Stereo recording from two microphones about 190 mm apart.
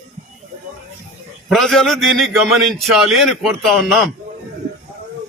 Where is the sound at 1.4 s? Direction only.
Centre (ahead or behind).